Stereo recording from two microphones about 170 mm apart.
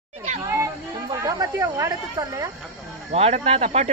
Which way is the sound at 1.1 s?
20° right (ahead or behind).